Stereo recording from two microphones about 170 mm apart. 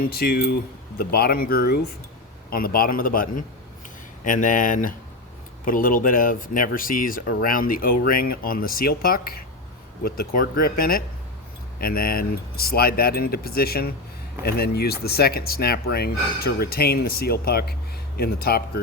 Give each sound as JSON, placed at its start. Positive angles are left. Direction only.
{"t": 0.1, "sound": "speech", "side_deg": 65}